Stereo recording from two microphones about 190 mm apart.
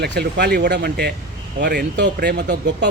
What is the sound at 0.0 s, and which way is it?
Speech, 60° right (ahead or behind).